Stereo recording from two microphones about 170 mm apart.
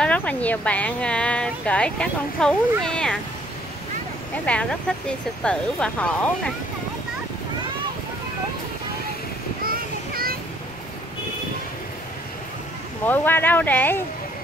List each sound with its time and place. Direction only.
0.0 s a woman's voice: 10° left (ahead or behind)
4.5 s a woman's voice: 5° left (ahead or behind)
9.7 s a sound: 60° right (ahead or behind)
13.0 s a woman's voice: 10° left (ahead or behind)